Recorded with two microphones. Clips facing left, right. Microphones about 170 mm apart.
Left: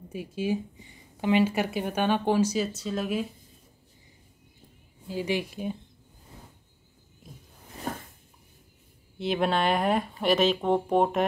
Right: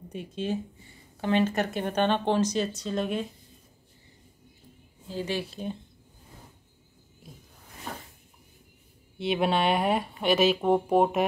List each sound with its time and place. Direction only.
0.1 s speech: 5° left (ahead or behind)
5.0 s speech: 10° left (ahead or behind)
7.9 s a sound: 45° left (ahead or behind)
9.2 s speech: 5° right (ahead or behind)